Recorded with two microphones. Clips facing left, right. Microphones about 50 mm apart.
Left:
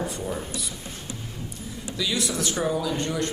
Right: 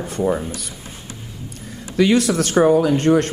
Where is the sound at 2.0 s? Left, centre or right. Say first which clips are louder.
Right 12 dB; right.